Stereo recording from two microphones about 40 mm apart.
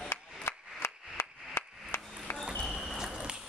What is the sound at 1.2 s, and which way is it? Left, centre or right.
Chop, left.